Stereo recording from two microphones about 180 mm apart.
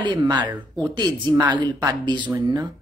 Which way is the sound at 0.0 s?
25° right (ahead or behind).